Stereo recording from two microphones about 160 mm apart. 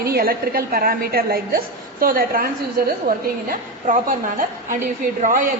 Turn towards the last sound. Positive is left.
turn(degrees=-60)  # may be behind; listen again after turning